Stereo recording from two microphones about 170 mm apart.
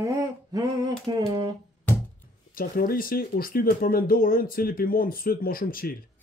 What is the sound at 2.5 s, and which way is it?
Speech, 60° left (ahead or behind).